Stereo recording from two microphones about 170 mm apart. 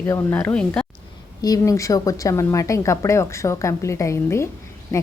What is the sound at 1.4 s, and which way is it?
A woman's voice, 20° left (ahead or behind).